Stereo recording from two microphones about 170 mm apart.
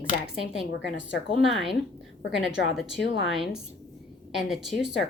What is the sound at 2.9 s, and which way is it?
Speech, centre (ahead or behind).